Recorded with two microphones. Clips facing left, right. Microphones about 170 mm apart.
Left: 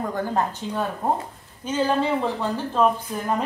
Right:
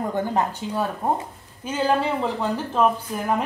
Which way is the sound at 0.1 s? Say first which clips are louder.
Right 1 dB; 10° right (ahead or behind).